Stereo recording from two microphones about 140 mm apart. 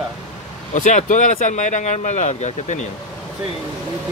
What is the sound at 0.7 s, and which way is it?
Speech, 70° left (ahead or behind).